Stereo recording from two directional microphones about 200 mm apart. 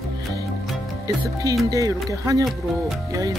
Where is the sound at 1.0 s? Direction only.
15° right (ahead or behind).